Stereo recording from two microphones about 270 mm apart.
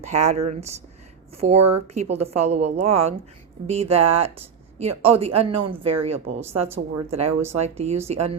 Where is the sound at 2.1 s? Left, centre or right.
Right.